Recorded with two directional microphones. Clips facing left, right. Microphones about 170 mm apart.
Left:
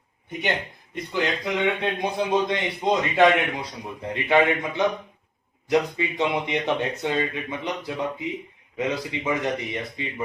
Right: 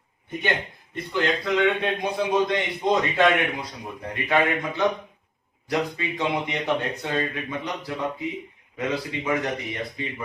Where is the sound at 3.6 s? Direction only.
25° left (ahead or behind).